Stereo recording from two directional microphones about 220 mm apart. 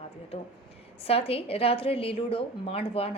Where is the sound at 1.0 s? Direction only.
25° left (ahead or behind).